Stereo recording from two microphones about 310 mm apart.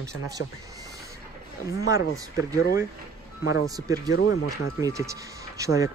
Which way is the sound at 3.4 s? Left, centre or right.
Left.